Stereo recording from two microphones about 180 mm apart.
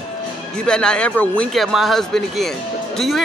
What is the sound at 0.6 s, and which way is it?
Speech, 5° left (ahead or behind).